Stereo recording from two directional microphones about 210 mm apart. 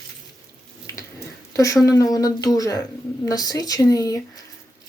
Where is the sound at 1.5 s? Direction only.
15° left (ahead or behind).